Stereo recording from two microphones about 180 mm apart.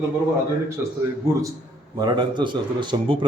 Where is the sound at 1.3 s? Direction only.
15° right (ahead or behind).